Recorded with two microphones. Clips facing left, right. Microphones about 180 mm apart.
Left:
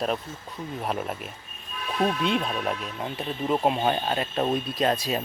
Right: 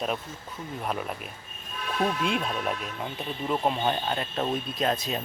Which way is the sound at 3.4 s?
10° left (ahead or behind).